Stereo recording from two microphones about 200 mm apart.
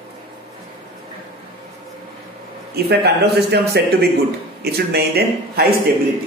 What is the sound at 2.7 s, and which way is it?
A man's voice, 50° right (ahead or behind).